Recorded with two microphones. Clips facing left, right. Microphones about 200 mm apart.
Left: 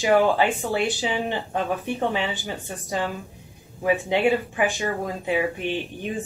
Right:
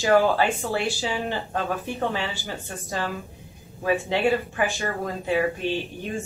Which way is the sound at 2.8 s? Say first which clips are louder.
Left 2 dB; 20° left (ahead or behind).